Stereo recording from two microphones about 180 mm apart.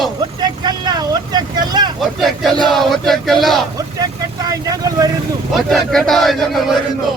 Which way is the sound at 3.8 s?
20° right (ahead or behind).